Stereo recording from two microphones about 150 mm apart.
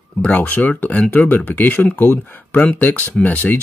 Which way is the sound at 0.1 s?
10° left (ahead or behind).